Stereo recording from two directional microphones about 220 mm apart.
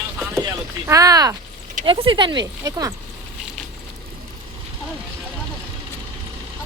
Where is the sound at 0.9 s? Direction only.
15° right (ahead or behind).